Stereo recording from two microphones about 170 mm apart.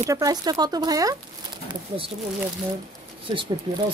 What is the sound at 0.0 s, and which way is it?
Speech, 20° right (ahead or behind).